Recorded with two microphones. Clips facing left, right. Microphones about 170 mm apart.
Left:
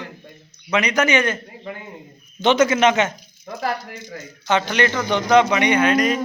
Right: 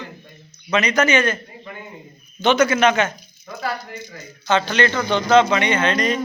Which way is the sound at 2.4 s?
25° left (ahead or behind).